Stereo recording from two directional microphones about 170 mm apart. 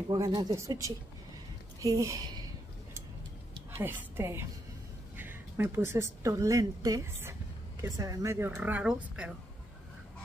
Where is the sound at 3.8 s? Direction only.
10° right (ahead or behind).